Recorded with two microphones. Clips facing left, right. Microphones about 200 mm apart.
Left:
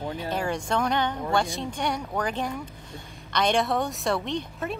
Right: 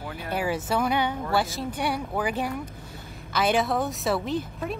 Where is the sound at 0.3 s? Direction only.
5° right (ahead or behind).